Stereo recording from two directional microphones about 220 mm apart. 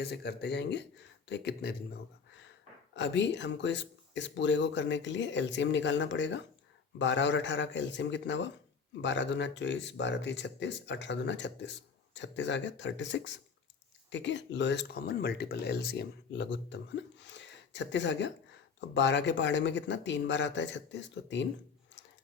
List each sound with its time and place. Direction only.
0.0 s speech: 50° left (ahead or behind)